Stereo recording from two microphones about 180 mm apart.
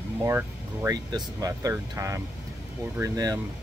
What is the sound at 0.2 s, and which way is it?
Speech, 15° right (ahead or behind).